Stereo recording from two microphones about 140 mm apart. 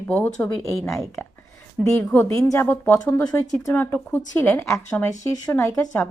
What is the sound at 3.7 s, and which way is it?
A woman's voice, 15° left (ahead or behind).